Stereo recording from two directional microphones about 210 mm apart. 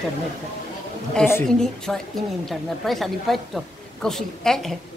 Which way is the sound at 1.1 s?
5° left (ahead or behind).